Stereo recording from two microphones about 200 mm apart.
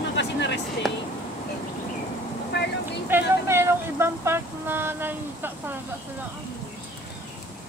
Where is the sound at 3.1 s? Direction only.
10° right (ahead or behind).